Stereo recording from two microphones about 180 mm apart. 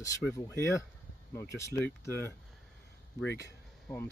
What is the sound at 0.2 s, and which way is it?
Speech, centre (ahead or behind).